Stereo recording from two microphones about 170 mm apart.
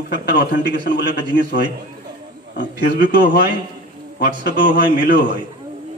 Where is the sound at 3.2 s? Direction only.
60° left (ahead or behind).